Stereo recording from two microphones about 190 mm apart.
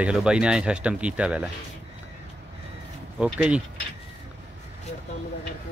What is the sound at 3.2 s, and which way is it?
Speech, 5° right (ahead or behind).